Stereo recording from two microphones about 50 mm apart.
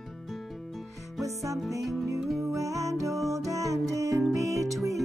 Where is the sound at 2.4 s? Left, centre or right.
Right.